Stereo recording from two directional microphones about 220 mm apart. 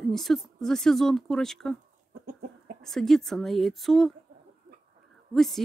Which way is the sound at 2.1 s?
45° right (ahead or behind).